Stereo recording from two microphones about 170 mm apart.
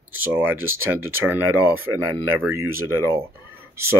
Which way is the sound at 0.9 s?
10° right (ahead or behind).